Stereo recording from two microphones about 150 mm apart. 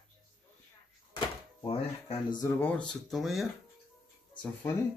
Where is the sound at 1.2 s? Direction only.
35° left (ahead or behind).